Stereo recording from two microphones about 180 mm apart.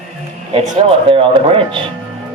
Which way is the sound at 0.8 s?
30° right (ahead or behind).